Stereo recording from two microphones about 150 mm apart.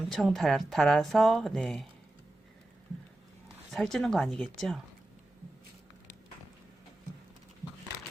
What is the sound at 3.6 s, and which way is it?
Speech, centre (ahead or behind).